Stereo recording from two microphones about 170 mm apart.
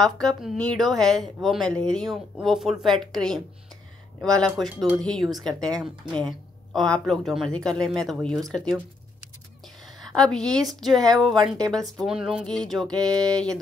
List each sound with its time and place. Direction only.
0.0 s speech: centre (ahead or behind)
10.0 s a woman's voice: 5° left (ahead or behind)
13.1 s speech: 20° right (ahead or behind)